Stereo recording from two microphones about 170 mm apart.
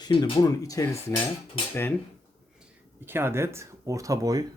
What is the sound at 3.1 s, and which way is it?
Speech, 15° right (ahead or behind).